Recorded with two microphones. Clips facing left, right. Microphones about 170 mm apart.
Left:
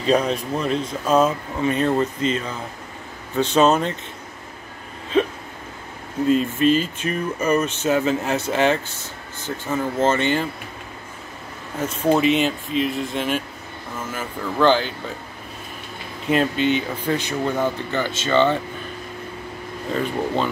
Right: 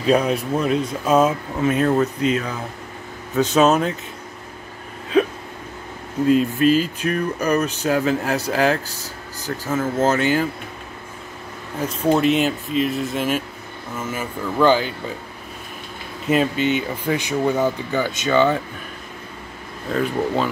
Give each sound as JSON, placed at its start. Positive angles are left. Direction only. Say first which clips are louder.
{"t": 0.0, "sound": "speech", "louder": "right 2 dB", "side_deg": -10}
{"t": 3.5, "sound": "speech", "louder": "even", "side_deg": -5}
{"t": 6.2, "sound": "speech", "louder": "right 2 dB", "side_deg": 0}
{"t": 8.8, "sound": "speech", "louder": "right 2 dB", "side_deg": -35}
{"t": 9.7, "sound": "speech", "louder": "right 1 dB", "side_deg": -5}
{"t": 12.1, "sound": "speech", "louder": "right 1 dB", "side_deg": 0}
{"t": 16.3, "sound": "speech", "louder": "right 1 dB", "side_deg": -5}
{"t": 19.9, "sound": "speech", "louder": "right 2 dB", "side_deg": 0}